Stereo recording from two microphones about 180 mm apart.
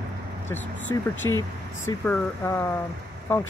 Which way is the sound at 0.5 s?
10° left (ahead or behind).